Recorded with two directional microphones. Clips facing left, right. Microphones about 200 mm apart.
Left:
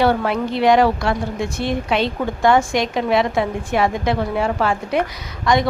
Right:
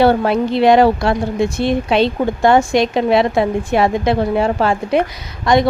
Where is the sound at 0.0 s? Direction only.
30° right (ahead or behind).